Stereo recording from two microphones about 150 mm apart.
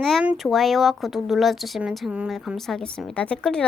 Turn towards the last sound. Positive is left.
turn(degrees=5)  # may be behind; listen again after turning